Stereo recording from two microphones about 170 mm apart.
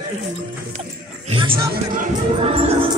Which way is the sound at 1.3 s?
30° right (ahead or behind).